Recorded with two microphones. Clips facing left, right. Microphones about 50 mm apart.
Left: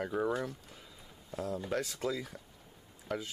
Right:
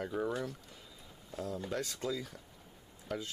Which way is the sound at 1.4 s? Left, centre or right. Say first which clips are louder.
Left 2 dB; centre.